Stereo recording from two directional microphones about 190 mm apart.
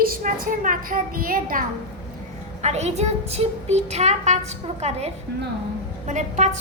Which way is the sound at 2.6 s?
35° right (ahead or behind).